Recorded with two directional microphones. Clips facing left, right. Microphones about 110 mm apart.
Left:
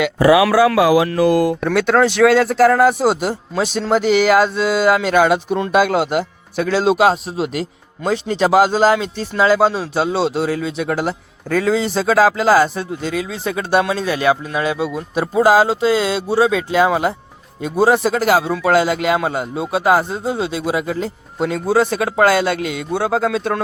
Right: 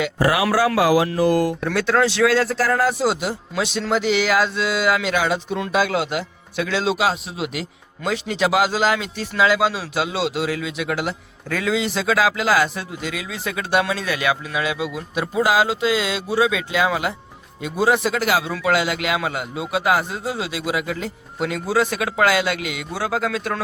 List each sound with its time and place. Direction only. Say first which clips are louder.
0.0 s speech: left 7 dB; 80° left; by 23.6 s 25° left (ahead or behind)